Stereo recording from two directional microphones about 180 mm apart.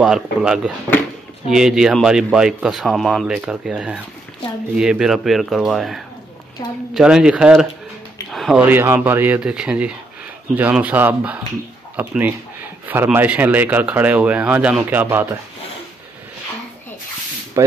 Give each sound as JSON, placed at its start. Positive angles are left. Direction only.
{"t": 0.0, "sound": "speech", "side_deg": -5}
{"t": 17.6, "sound": "speech", "side_deg": -15}